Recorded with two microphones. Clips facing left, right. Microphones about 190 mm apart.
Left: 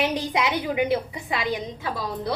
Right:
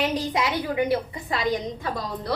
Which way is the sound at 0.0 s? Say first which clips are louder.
Even; 15° left (ahead or behind).